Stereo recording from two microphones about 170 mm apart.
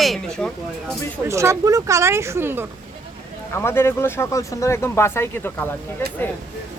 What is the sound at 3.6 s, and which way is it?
Speech, 15° left (ahead or behind).